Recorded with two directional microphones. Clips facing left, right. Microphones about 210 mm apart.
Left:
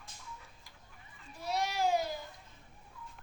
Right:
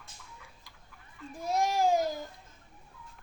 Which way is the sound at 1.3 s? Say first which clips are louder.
Right 6 dB; 45° right (ahead or behind).